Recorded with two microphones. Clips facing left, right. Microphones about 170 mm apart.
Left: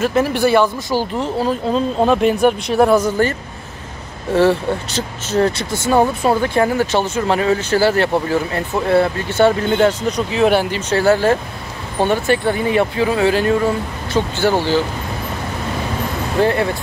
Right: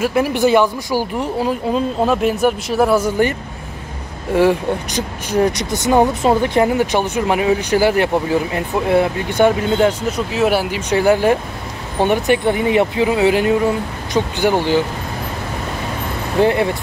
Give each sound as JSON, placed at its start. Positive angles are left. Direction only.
{"t": 0.0, "sound": "speech", "side_deg": -10}
{"t": 16.3, "sound": "speech", "side_deg": -20}